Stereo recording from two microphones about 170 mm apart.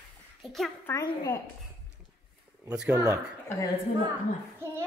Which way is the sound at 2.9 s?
15° right (ahead or behind).